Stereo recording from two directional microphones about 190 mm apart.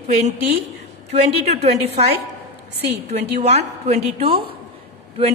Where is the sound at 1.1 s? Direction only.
35° right (ahead or behind).